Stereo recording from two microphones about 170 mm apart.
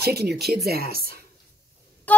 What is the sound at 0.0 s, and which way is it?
Speech, 70° right (ahead or behind).